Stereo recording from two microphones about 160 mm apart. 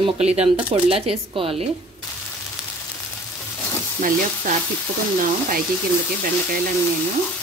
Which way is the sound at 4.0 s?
60° right (ahead or behind).